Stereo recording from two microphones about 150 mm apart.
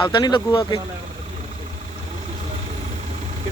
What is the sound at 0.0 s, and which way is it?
Speech, 30° left (ahead or behind).